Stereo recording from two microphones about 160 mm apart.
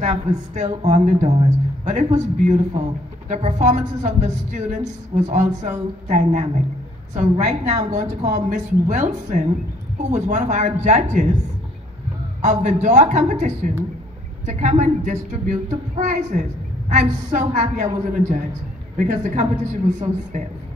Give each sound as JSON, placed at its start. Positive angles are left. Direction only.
{"t": 0.0, "sound": "speech", "side_deg": -50}
{"t": 12.4, "sound": "speech", "side_deg": -50}